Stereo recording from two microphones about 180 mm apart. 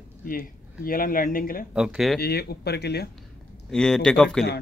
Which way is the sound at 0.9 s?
50° left (ahead or behind).